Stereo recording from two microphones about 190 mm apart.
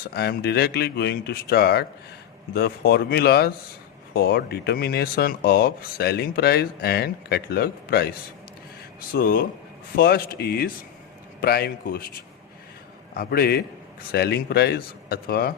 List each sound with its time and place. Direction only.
0.1 s speech: 55° left (ahead or behind)
9.1 s speech: 50° left (ahead or behind)
13.1 s speech: 50° left (ahead or behind)